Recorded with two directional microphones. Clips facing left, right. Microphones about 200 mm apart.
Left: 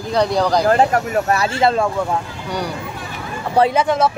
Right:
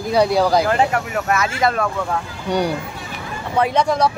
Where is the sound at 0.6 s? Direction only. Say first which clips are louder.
Left 3 dB; 40° left (ahead or behind).